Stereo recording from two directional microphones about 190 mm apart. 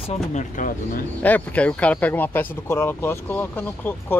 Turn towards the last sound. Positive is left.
turn(degrees=10)  # may be behind; listen again after turning